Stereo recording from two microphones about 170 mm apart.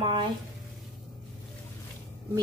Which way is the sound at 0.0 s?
30° right (ahead or behind).